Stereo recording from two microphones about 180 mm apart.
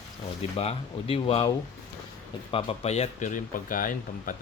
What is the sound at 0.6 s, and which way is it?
Speech, 30° left (ahead or behind).